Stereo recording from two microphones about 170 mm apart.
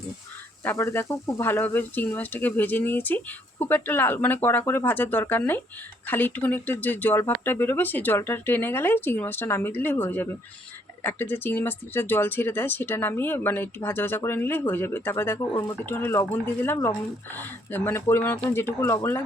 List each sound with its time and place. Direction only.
0.6 s speech: 15° left (ahead or behind)